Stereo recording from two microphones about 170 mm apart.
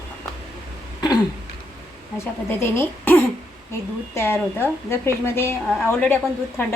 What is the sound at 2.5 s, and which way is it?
A woman's voice, 15° left (ahead or behind).